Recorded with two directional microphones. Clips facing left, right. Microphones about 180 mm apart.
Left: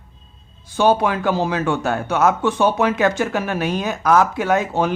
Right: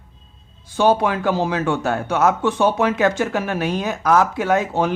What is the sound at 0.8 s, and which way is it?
Speech, 30° right (ahead or behind).